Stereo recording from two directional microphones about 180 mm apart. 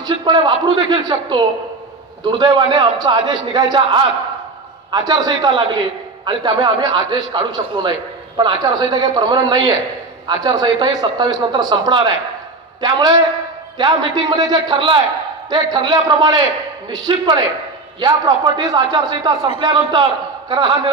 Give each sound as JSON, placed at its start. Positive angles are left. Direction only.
{"t": 0.0, "sound": "a man's voice", "side_deg": -25}